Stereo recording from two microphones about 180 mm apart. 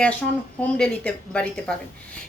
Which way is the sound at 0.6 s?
5° left (ahead or behind).